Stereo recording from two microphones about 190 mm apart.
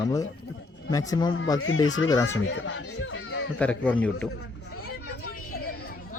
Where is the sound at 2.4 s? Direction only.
75° left (ahead or behind).